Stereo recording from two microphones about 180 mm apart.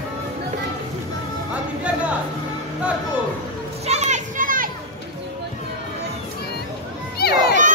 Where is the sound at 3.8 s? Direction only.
40° right (ahead or behind).